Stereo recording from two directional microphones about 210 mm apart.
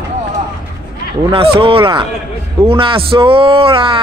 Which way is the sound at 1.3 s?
25° right (ahead or behind).